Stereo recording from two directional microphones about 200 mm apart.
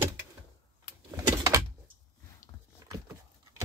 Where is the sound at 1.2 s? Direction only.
15° right (ahead or behind).